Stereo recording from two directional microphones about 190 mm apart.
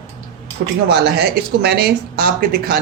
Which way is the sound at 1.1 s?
60° right (ahead or behind).